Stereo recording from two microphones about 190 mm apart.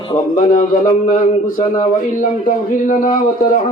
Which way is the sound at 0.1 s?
35° left (ahead or behind).